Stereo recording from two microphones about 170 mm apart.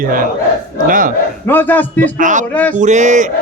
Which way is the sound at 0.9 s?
55° right (ahead or behind).